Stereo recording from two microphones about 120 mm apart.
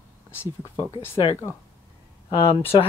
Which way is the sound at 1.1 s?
45° left (ahead or behind).